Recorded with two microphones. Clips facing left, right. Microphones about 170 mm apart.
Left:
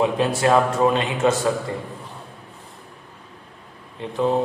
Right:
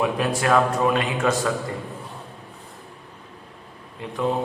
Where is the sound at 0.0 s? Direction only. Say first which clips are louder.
Left 3 dB; 25° left (ahead or behind).